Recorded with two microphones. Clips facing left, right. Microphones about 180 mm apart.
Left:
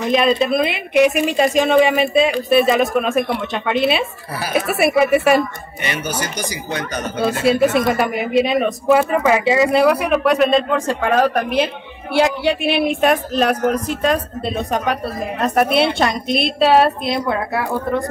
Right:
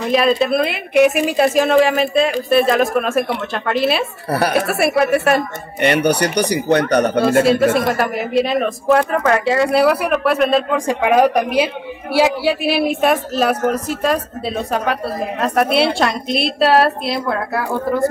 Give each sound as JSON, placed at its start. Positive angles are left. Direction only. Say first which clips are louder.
{"t": 0.1, "sound": "speech", "louder": "right 1 dB", "side_deg": 0}
{"t": 4.3, "sound": "speech", "louder": "right 6 dB", "side_deg": -65}
{"t": 4.6, "sound": "speech", "louder": "left 1 dB", "side_deg": 0}
{"t": 5.4, "sound": "speech", "louder": "right 5 dB", "side_deg": -60}
{"t": 7.9, "sound": "a woman's voice", "louder": "left 1 dB", "side_deg": 0}